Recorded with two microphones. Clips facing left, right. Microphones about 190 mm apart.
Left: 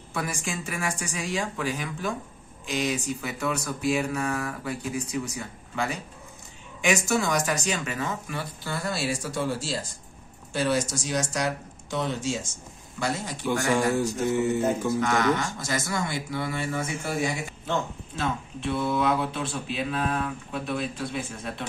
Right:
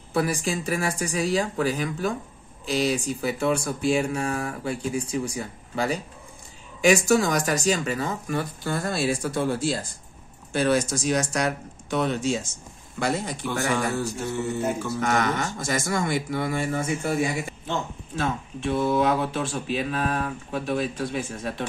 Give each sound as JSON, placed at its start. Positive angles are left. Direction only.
{"t": 0.1, "sound": "speech", "side_deg": -35}
{"t": 13.5, "sound": "speech", "side_deg": 15}
{"t": 15.0, "sound": "speech", "side_deg": -50}
{"t": 18.1, "sound": "speech", "side_deg": -45}